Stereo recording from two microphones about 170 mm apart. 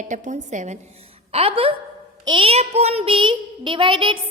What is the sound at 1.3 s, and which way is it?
A woman's voice, 35° right (ahead or behind).